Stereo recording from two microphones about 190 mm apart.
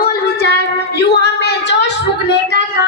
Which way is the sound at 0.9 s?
60° left (ahead or behind).